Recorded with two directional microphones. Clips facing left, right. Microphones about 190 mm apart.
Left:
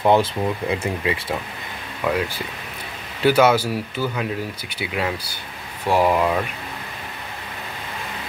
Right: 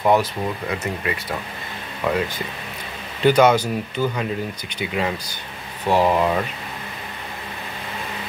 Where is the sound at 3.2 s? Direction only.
5° left (ahead or behind).